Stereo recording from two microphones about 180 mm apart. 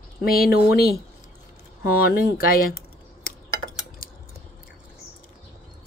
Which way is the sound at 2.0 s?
55° left (ahead or behind).